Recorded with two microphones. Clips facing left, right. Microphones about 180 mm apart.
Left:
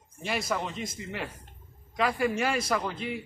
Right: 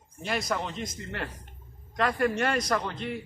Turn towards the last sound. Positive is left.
turn(degrees=5)  # may be behind; listen again after turning